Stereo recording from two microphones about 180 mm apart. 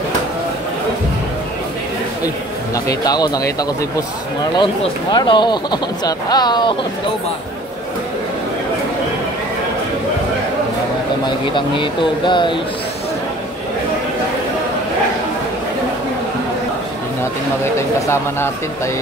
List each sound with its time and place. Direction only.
2.7 s speech: 20° left (ahead or behind)
11.2 s speech: 25° left (ahead or behind)
17.7 s speech: 15° left (ahead or behind)